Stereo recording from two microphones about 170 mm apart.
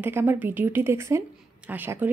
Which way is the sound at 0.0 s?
15° right (ahead or behind).